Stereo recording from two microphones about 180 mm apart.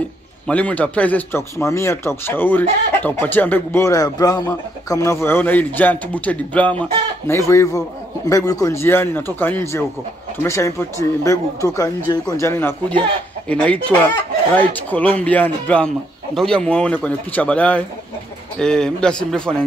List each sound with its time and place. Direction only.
0.5 s a man's voice: 10° left (ahead or behind)